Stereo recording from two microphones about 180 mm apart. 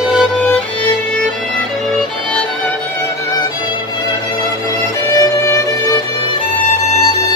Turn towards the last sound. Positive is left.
turn(degrees=20)  # may be behind; listen again after turning